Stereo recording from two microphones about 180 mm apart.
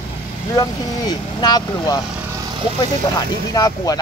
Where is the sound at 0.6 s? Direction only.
20° left (ahead or behind).